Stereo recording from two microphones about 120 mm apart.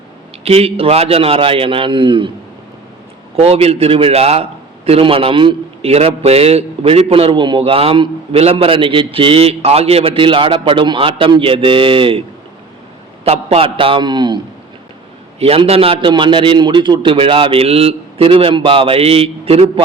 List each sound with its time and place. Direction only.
0.4 s a man's voice: 55° right (ahead or behind)
3.3 s a man's voice: 55° right (ahead or behind)
13.2 s a man's voice: 60° right (ahead or behind); by 14.3 s 40° right (ahead or behind)
15.4 s a man's voice: 55° right (ahead or behind)